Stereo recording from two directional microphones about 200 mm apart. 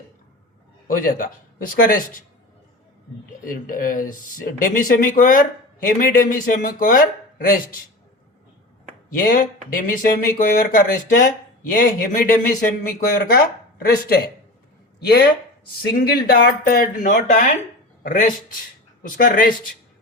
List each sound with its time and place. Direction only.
0.9 s speech: 45° left (ahead or behind)
3.4 s speech: 45° left (ahead or behind)
9.1 s speech: 40° left (ahead or behind)